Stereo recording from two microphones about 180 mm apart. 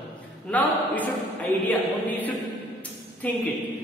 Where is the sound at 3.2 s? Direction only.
10° left (ahead or behind).